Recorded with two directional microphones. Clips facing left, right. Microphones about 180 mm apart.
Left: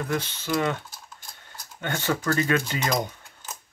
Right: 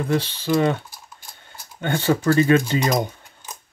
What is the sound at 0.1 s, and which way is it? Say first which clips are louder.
Speech: right 7 dB; 30° right (ahead or behind).